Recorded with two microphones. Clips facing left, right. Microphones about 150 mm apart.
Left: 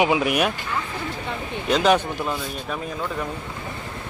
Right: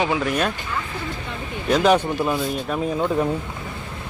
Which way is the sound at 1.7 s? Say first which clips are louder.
Right 2 dB; 10° right (ahead or behind).